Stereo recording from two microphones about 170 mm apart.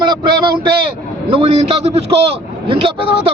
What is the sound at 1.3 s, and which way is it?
A man's voice, 35° right (ahead or behind).